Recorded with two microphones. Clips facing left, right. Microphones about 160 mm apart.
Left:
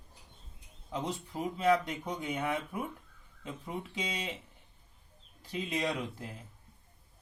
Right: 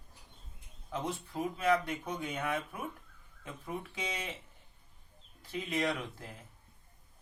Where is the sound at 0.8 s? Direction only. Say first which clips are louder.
Left 1 dB; 20° left (ahead or behind).